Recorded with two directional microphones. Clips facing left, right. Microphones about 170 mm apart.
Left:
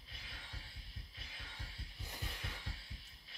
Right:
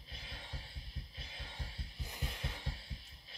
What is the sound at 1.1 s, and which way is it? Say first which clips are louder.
Music: right 2 dB; 30° right (ahead or behind).